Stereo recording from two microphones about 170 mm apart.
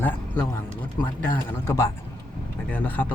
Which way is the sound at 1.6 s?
15° left (ahead or behind).